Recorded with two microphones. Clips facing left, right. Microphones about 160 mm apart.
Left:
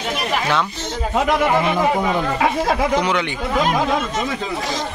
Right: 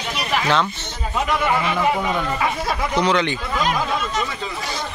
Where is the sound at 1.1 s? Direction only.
80° left.